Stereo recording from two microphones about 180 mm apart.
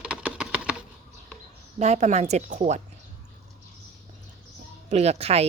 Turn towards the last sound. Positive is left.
turn(degrees=-35)  # may be behind; listen again after turning